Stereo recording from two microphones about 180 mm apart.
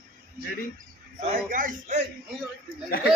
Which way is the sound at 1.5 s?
50° right (ahead or behind).